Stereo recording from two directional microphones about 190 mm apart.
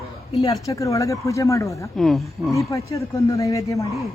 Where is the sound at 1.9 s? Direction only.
Centre (ahead or behind).